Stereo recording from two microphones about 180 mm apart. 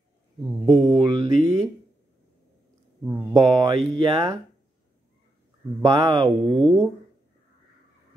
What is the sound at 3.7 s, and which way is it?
Speech, 30° right (ahead or behind).